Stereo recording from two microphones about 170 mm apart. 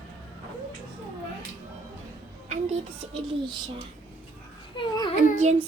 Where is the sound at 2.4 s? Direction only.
40° right (ahead or behind).